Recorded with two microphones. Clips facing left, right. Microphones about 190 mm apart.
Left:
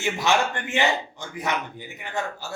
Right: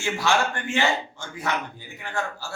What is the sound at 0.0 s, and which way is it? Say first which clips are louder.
A man's voice: left 1 dB; 20° left (ahead or behind).